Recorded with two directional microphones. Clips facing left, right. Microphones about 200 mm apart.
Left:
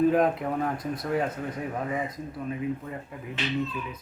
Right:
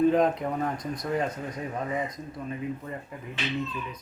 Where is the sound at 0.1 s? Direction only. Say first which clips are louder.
Even; 5° left (ahead or behind).